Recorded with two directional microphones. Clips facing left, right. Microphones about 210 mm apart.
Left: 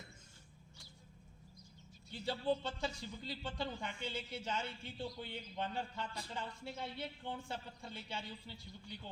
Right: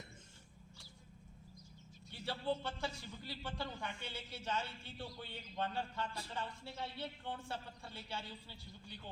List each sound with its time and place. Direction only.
2.2 s speech: 20° left (ahead or behind)